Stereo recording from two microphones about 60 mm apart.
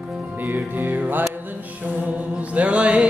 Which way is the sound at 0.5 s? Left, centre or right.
Right.